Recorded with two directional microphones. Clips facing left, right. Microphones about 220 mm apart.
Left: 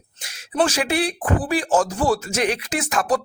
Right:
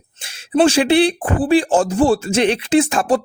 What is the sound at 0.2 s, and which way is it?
Speech, 30° right (ahead or behind).